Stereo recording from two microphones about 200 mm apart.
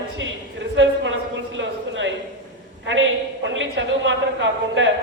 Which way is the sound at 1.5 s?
65° right (ahead or behind).